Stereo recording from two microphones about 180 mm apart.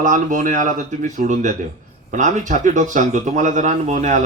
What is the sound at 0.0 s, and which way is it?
Speech, 45° right (ahead or behind).